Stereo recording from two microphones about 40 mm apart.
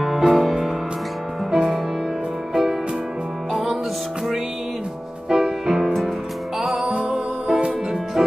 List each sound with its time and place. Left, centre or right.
0.2 s music: centre
1.5 s music: centre
5.3 s music: centre
6.8 s music: right